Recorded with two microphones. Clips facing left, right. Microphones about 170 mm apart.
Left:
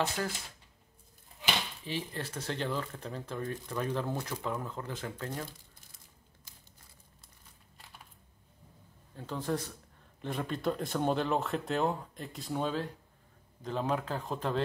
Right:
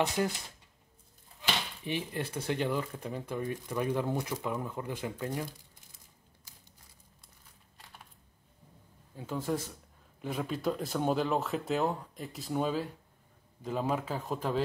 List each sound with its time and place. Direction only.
0.2 s speech: 20° right (ahead or behind)
1.9 s speech: 15° right (ahead or behind)
9.1 s speech: 10° right (ahead or behind)